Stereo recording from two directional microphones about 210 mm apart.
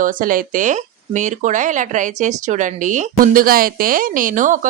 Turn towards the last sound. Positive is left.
turn(degrees=-35)  # may be behind; listen again after turning